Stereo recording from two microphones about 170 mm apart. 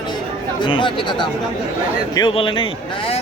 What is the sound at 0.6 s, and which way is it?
Speech, 30° left (ahead or behind).